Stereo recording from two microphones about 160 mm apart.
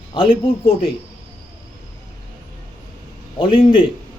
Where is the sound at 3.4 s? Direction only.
30° left (ahead or behind).